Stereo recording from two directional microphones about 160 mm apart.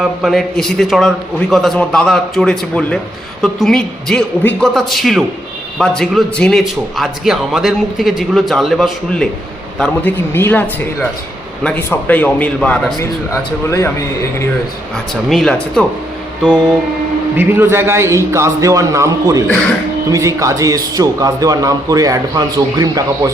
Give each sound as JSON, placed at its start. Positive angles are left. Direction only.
{"t": 0.0, "sound": "a man's voice", "side_deg": 0}
{"t": 13.0, "sound": "speech", "side_deg": 20}
{"t": 14.9, "sound": "a man's voice", "side_deg": 0}
{"t": 17.3, "sound": "a man's voice", "side_deg": -15}